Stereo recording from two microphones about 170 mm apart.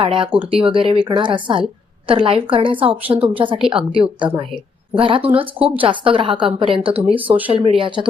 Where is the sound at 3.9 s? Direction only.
30° right (ahead or behind).